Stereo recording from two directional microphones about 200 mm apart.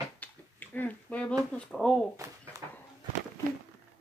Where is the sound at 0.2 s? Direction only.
10° left (ahead or behind).